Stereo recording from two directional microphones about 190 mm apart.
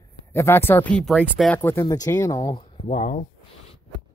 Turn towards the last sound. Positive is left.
turn(degrees=40)  # may be behind; listen again after turning